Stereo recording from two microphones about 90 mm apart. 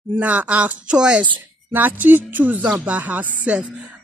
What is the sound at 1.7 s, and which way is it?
Speech, 20° right (ahead or behind).